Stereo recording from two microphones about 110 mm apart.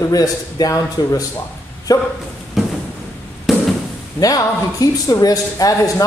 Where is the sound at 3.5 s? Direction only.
Centre (ahead or behind).